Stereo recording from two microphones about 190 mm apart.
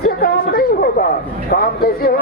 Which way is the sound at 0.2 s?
50° left (ahead or behind).